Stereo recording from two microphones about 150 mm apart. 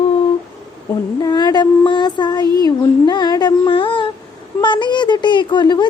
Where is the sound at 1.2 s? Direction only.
25° left (ahead or behind).